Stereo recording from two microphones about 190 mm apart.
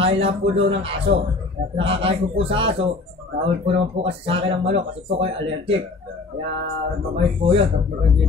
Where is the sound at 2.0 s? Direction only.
30° right (ahead or behind).